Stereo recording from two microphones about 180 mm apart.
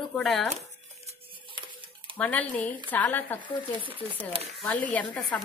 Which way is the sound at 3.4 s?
25° right (ahead or behind).